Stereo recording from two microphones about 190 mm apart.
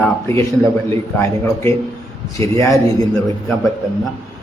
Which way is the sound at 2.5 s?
15° left (ahead or behind).